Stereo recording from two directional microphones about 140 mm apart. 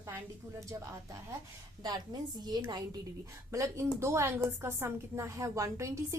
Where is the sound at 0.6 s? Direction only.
20° right (ahead or behind).